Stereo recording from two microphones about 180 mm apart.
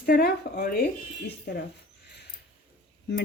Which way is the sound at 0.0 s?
60° left (ahead or behind).